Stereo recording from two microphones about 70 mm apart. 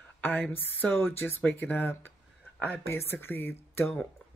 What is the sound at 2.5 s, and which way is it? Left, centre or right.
Speech, centre.